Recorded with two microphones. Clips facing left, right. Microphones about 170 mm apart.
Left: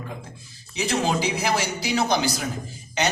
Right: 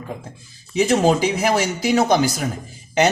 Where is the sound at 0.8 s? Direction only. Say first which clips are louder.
Right 8 dB; 50° right (ahead or behind).